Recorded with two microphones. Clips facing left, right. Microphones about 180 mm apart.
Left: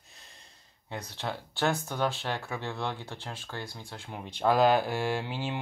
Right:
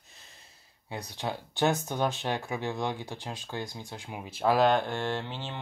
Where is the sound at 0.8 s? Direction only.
10° right (ahead or behind).